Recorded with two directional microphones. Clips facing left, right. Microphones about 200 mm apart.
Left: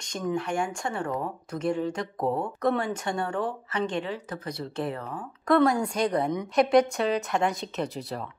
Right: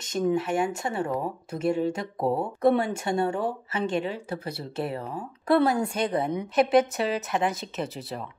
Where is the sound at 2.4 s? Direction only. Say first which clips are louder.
Right 4 dB; 10° right (ahead or behind).